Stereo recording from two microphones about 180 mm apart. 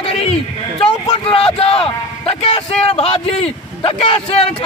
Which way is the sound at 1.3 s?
30° left (ahead or behind).